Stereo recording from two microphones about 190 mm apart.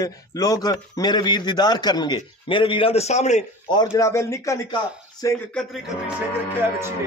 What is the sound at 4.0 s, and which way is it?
Speech, 15° left (ahead or behind).